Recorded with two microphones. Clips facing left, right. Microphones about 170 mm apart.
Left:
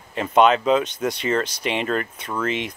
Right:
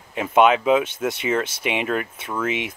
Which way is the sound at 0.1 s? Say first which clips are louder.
Even; 5° right (ahead or behind).